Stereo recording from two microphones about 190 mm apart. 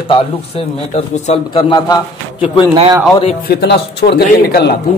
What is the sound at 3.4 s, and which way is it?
Speech, 60° left (ahead or behind).